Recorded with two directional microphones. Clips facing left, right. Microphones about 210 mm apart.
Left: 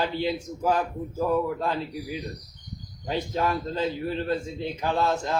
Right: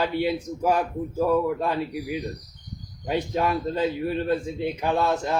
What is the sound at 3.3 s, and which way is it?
Speech, 15° right (ahead or behind).